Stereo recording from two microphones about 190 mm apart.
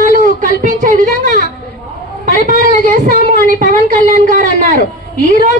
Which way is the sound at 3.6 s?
45° right (ahead or behind).